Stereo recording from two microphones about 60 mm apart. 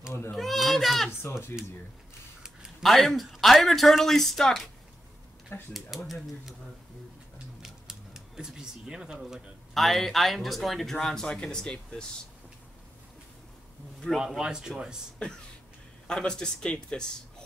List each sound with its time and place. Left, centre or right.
0.4 s children playing: centre
1.2 s speech: left
2.8 s speech: centre
5.7 s speech: centre
7.6 s speech: centre
14.2 s speech: centre
16.1 s speech: centre